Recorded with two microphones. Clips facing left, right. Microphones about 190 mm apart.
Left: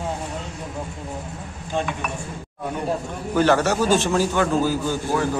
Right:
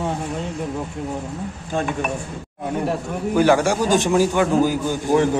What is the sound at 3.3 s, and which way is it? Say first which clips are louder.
A man's voice: right 2 dB; 10° right (ahead or behind).